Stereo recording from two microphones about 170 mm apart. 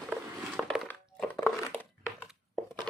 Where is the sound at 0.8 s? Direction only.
10° left (ahead or behind).